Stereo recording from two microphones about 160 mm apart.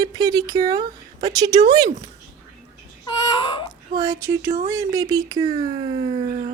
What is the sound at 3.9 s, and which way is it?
Speech, 20° right (ahead or behind).